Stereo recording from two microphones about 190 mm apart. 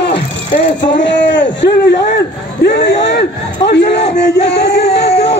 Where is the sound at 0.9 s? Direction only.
70° left (ahead or behind).